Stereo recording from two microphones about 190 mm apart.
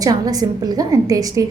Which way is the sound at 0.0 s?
20° right (ahead or behind).